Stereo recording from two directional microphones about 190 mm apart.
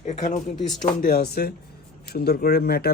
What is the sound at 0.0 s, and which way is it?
Speech, 40° left (ahead or behind).